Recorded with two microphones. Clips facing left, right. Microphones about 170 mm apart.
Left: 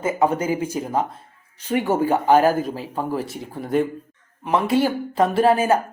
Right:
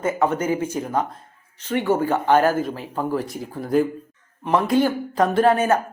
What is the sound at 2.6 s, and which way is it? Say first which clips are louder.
Speech: even; 40° left (ahead or behind).